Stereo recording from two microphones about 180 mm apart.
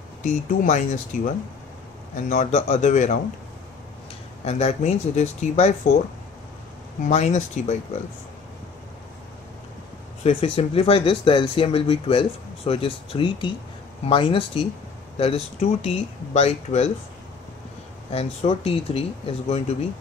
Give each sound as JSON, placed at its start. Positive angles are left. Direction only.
{"t": 0.2, "sound": "speech", "side_deg": 45}
{"t": 4.5, "sound": "speech", "side_deg": 35}
{"t": 7.1, "sound": "speech", "side_deg": 40}
{"t": 10.2, "sound": "speech", "side_deg": 30}
{"t": 18.1, "sound": "speech", "side_deg": 35}